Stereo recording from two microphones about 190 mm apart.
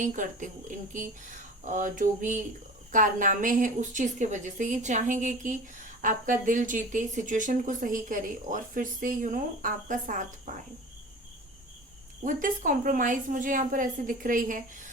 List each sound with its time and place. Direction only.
0.0 s a woman's voice: 40° right (ahead or behind)
12.2 s a woman's voice: 45° right (ahead or behind)